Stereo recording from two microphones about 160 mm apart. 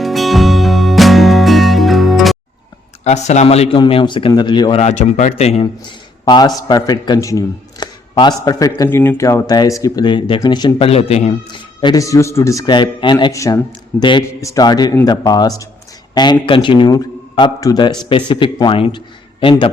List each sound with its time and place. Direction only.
0.0 s music: centre (ahead or behind)
3.0 s a man's voice: 45° left (ahead or behind); by 4.8 s 30° left (ahead or behind)
4.8 s speech: 45° left (ahead or behind)
6.2 s a man's voice: 25° left (ahead or behind)